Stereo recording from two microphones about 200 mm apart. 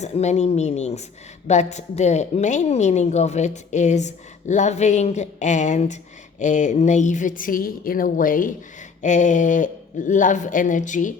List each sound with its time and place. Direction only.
0.0 s a woman's voice: 35° left (ahead or behind)